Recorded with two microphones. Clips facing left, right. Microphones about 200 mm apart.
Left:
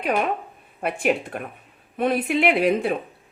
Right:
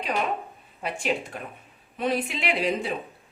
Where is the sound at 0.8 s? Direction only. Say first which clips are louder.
Left 5 dB; 60° left (ahead or behind).